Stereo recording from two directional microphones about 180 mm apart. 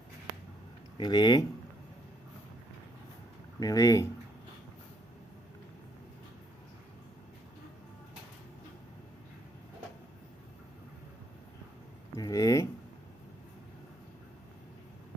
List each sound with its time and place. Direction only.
0.9 s speech: 25° left (ahead or behind)
3.6 s speech: 20° left (ahead or behind)
12.1 s a sound: 20° left (ahead or behind)